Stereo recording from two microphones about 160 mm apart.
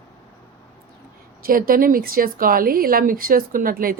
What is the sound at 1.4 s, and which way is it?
Speech, 65° right (ahead or behind).